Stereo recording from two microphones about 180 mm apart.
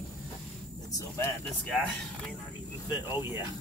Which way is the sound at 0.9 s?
15° left (ahead or behind).